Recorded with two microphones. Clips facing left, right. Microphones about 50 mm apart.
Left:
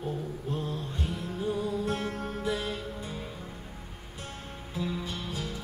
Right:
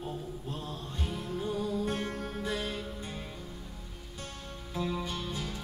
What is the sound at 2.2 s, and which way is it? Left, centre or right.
Music, centre.